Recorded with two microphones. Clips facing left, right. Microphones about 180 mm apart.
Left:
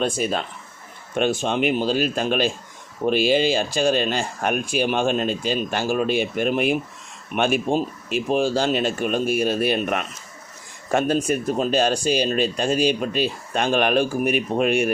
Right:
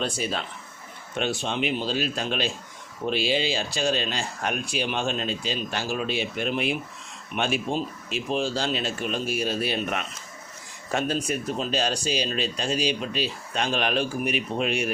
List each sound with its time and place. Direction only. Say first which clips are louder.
0.0 s speech: left 6 dB; 50° left (ahead or behind)